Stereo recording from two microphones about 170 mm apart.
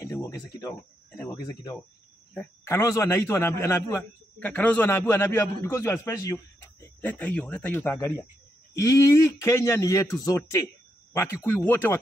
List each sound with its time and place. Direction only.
0.0 s a man's voice: 15° left (ahead or behind)